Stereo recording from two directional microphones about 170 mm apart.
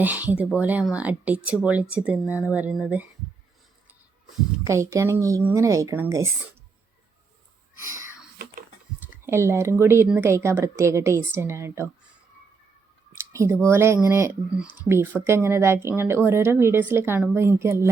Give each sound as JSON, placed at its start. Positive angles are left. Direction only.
{"t": 0.0, "sound": "speech", "side_deg": -10}
{"t": 4.6, "sound": "speech", "side_deg": -15}
{"t": 9.2, "sound": "speech", "side_deg": -15}
{"t": 13.3, "sound": "speech", "side_deg": -15}